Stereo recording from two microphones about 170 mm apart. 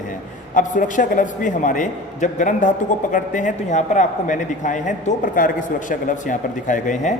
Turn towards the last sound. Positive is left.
turn(degrees=50)  # may be behind; listen again after turning